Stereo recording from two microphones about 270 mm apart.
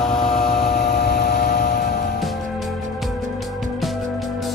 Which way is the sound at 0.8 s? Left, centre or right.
Left.